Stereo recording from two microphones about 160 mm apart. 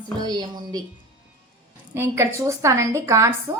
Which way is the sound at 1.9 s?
15° right (ahead or behind).